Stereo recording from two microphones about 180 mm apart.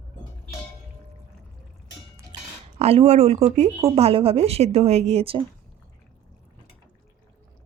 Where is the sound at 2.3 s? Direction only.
25° right (ahead or behind).